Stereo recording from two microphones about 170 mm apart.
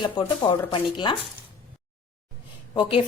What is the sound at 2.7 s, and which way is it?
Speech, 30° left (ahead or behind).